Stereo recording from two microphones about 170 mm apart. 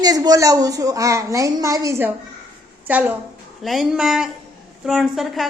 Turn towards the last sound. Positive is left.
turn(degrees=0)  # may be behind; listen again after turning